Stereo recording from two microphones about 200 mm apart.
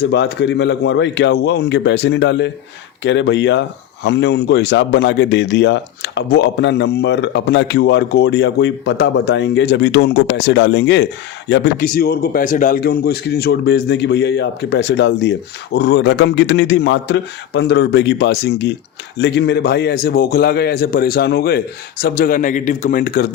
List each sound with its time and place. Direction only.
0.0 s a man's voice: 60° left (ahead or behind)